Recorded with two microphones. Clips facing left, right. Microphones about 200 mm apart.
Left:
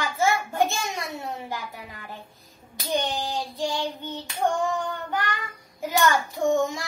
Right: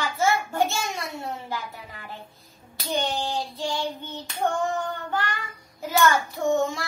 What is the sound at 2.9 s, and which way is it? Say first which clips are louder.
Speech: even; 15° left (ahead or behind).